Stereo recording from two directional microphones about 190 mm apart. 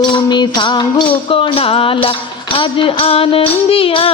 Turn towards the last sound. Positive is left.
turn(degrees=30)  # may be behind; listen again after turning